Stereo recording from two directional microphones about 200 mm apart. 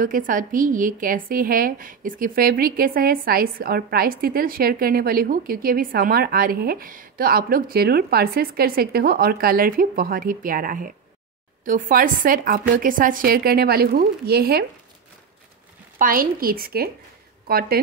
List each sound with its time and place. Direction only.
0.0 s a woman's voice: 45° right (ahead or behind)
16.0 s a woman's voice: 45° right (ahead or behind)